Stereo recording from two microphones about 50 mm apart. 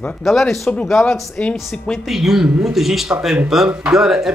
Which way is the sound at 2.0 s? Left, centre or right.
Centre.